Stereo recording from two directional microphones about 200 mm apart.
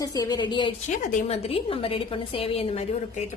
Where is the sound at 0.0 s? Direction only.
20° left (ahead or behind).